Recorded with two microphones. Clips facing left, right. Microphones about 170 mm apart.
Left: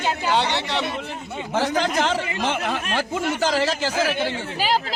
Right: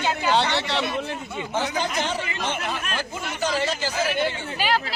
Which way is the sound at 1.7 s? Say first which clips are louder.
Left 4 dB; 90° left.